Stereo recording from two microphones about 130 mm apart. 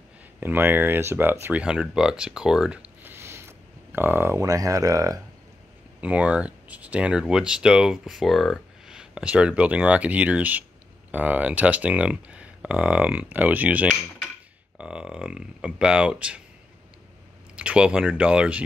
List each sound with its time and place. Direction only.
0.4 s speech: 15° right (ahead or behind)
3.0 s a sound: 15° right (ahead or behind)
5.9 s speech: 10° right (ahead or behind)
17.6 s speech: 10° right (ahead or behind)